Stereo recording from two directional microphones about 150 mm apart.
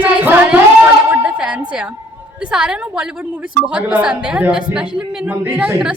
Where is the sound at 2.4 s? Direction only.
5° right (ahead or behind).